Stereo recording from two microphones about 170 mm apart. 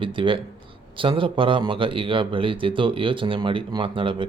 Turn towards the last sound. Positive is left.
turn(degrees=-30)  # may be behind; listen again after turning